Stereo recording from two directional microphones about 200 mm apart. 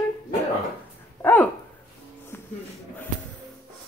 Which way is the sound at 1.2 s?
10° left (ahead or behind).